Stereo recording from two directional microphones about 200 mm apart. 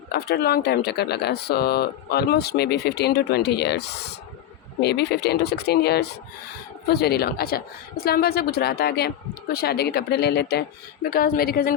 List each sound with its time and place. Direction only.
0.1 s a woman's voice: 50° left (ahead or behind)